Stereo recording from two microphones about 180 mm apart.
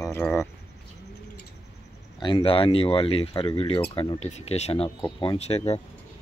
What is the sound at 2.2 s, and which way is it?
Speech, 30° left (ahead or behind).